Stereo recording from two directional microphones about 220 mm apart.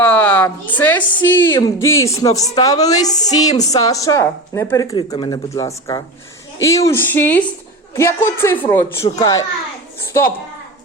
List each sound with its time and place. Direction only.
0.0 s a sound: 10° left (ahead or behind)
0.8 s speech: 10° left (ahead or behind)
1.5 s speech: 20° left (ahead or behind)